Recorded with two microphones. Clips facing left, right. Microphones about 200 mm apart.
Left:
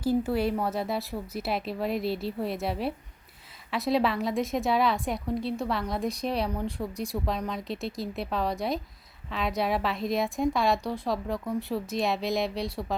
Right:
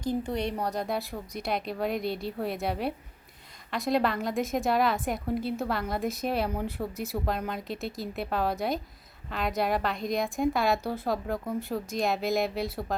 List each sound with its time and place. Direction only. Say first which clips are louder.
0.0 s a woman's voice: left 4 dB; 5° left (ahead or behind)